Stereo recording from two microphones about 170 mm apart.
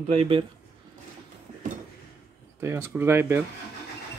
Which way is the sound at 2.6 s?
15° right (ahead or behind).